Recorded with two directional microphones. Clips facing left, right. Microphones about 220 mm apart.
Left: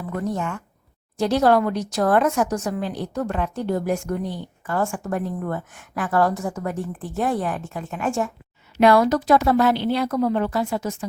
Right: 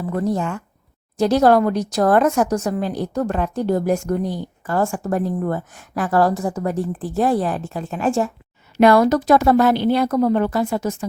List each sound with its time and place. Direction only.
0.0 s a woman's voice: 35° right (ahead or behind)
8.8 s a woman's voice: 45° right (ahead or behind)